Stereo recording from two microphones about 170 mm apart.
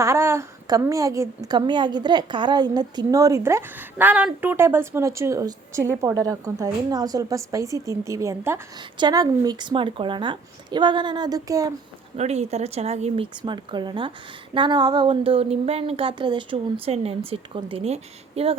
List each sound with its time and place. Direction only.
0.0 s a woman's voice: 15° right (ahead or behind)
12.1 s speech: 40° right (ahead or behind)
13.4 s a woman's voice: 25° right (ahead or behind)